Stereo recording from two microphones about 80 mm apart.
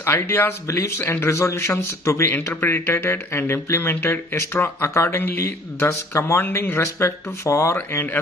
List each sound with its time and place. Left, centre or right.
0.0 s speech: left
6.4 s speech: left